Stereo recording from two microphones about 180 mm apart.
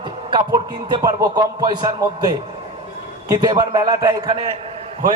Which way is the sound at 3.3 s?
20° right (ahead or behind).